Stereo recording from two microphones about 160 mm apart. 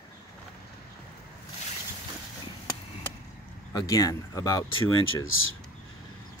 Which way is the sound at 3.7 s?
20° left (ahead or behind).